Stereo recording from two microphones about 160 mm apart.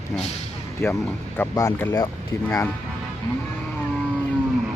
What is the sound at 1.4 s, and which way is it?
Speech, 15° left (ahead or behind).